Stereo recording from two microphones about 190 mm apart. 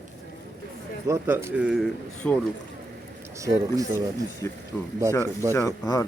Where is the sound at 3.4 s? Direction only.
15° right (ahead or behind).